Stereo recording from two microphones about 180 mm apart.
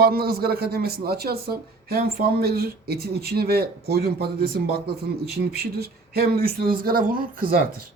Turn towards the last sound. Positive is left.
turn(degrees=-50)  # may be behind; listen again after turning